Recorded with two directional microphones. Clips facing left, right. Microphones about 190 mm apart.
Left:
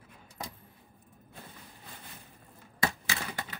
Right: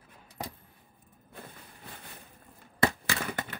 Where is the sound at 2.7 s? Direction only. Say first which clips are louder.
Right 5 dB; 60° right (ahead or behind).